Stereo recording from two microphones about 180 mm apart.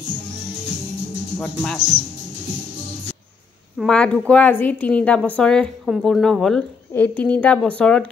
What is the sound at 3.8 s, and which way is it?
A woman's voice, 5° left (ahead or behind).